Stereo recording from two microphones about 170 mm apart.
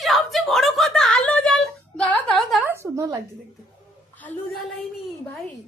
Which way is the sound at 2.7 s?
15° right (ahead or behind).